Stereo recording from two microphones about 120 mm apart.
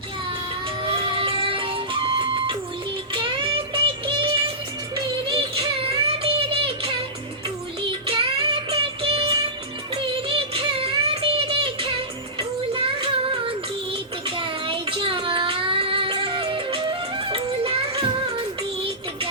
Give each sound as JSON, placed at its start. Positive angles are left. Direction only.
{"t": 0.9, "sound": "music", "side_deg": -45}
{"t": 6.1, "sound": "a sound", "side_deg": -50}
{"t": 7.8, "sound": "music", "side_deg": -50}
{"t": 12.4, "sound": "child singing", "side_deg": -50}